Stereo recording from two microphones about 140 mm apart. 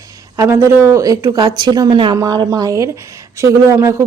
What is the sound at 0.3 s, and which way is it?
Speech, 20° right (ahead or behind).